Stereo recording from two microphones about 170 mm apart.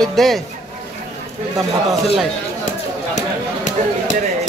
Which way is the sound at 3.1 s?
45° left (ahead or behind).